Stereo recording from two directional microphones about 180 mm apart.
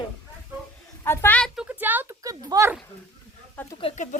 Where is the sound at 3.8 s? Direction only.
40° left (ahead or behind).